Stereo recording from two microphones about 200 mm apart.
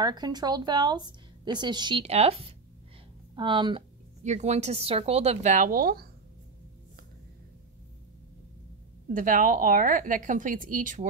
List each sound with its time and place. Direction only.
0.0 s a woman's voice: 20° right (ahead or behind)
4.2 s speech: 35° right (ahead or behind)
9.1 s a woman's voice: 45° right (ahead or behind)